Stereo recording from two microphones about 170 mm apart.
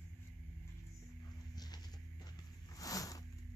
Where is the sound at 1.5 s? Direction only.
25° left (ahead or behind).